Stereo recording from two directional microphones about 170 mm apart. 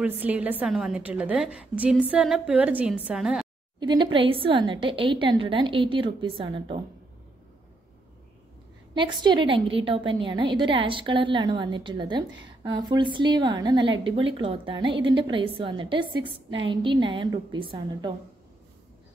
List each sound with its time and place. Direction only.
0.2 s a woman's voice: 10° right (ahead or behind)
3.8 s a woman's voice: 25° right (ahead or behind)
8.9 s a woman's voice: 25° right (ahead or behind)